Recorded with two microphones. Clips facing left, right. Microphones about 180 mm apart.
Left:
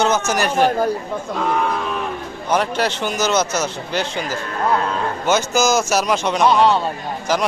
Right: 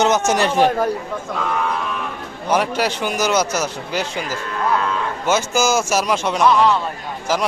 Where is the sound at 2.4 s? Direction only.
10° right (ahead or behind).